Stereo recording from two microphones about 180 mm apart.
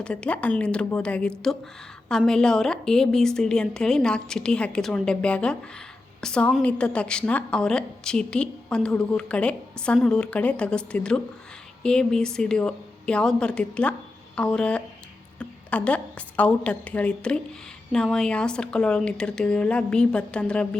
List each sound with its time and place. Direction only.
0.0 s a woman's voice: 5° left (ahead or behind)